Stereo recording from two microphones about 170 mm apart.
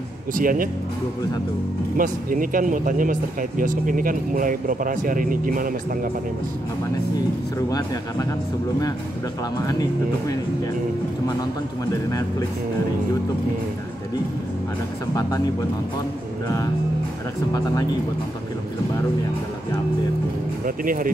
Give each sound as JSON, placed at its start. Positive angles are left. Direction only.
{"t": 0.3, "sound": "speech", "side_deg": -55}
{"t": 2.0, "sound": "speech", "side_deg": -55}
{"t": 7.5, "sound": "speech", "side_deg": 20}
{"t": 9.7, "sound": "speech", "side_deg": 20}
{"t": 12.1, "sound": "speech", "side_deg": 20}
{"t": 20.6, "sound": "speech", "side_deg": -55}